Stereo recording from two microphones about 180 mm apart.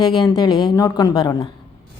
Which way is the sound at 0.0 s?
25° left (ahead or behind).